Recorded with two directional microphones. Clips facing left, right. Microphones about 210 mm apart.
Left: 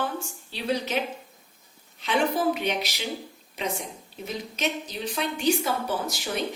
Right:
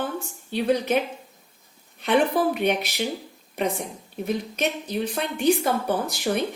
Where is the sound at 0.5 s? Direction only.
55° right (ahead or behind).